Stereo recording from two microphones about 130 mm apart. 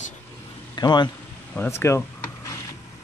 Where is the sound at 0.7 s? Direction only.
35° left (ahead or behind).